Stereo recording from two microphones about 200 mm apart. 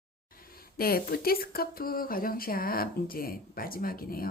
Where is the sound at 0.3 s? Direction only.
45° left (ahead or behind).